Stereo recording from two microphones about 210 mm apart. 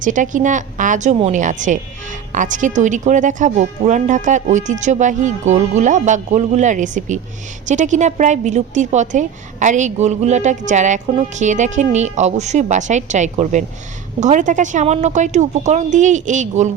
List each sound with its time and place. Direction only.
0.0 s a woman's voice: 35° right (ahead or behind)